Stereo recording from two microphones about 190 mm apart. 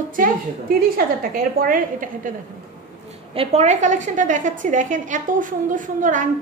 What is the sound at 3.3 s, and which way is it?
A woman's voice, 35° right (ahead or behind).